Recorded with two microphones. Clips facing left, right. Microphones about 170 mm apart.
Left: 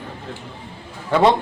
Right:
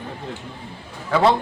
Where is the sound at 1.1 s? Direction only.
15° left (ahead or behind).